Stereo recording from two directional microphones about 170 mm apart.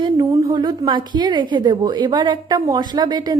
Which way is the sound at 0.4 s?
25° right (ahead or behind).